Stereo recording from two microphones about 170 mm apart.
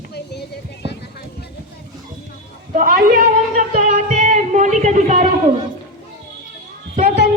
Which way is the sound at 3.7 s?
50° right (ahead or behind).